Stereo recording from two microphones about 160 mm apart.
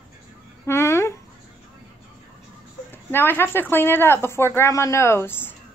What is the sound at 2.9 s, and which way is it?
Speech, 15° left (ahead or behind).